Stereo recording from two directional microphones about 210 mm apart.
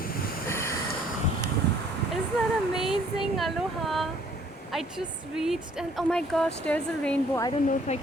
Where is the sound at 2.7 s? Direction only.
Centre (ahead or behind).